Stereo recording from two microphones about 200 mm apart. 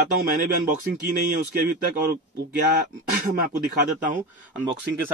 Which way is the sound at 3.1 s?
45° right (ahead or behind).